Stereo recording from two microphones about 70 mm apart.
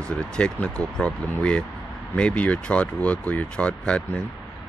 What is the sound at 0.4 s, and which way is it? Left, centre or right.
Speech, centre.